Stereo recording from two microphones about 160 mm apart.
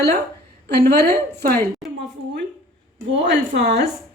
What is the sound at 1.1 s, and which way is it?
Speech, 70° right (ahead or behind).